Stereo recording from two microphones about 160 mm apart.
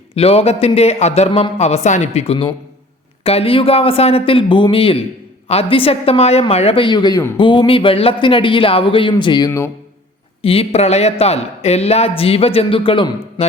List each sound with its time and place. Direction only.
0.1 s a woman's voice: 40° left (ahead or behind)